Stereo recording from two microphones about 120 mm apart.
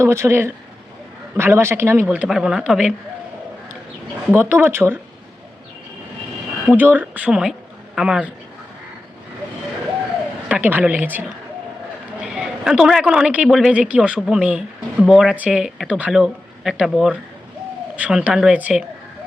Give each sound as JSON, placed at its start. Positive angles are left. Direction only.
{"t": 0.0, "sound": "speech", "side_deg": -20}
{"t": 2.0, "sound": "speech", "side_deg": -5}
{"t": 4.3, "sound": "speech", "side_deg": -15}
{"t": 6.7, "sound": "speech", "side_deg": -15}
{"t": 10.5, "sound": "speech", "side_deg": -15}
{"t": 12.2, "sound": "a woman's voice", "side_deg": -5}